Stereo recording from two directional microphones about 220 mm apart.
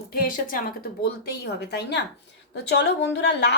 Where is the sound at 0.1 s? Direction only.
40° left (ahead or behind).